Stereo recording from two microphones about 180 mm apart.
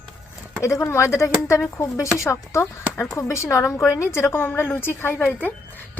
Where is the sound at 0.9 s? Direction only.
15° left (ahead or behind).